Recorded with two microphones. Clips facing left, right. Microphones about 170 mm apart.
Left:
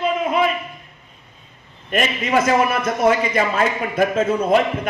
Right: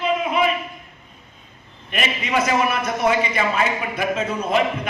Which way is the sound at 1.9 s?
45° left (ahead or behind).